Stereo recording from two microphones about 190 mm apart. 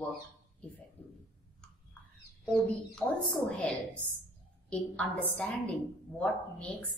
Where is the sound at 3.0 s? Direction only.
10° left (ahead or behind).